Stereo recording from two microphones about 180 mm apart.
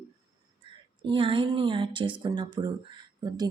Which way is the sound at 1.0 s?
30° right (ahead or behind).